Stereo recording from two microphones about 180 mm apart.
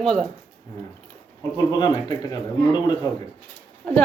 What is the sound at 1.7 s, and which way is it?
Speech, 20° left (ahead or behind).